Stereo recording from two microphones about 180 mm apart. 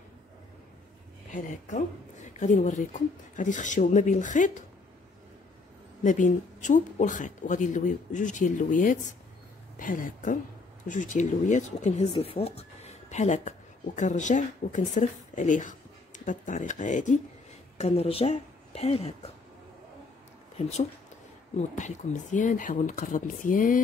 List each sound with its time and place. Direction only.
1.3 s speech: 45° left (ahead or behind)
6.0 s speech: 45° left (ahead or behind)
20.5 s speech: 35° left (ahead or behind)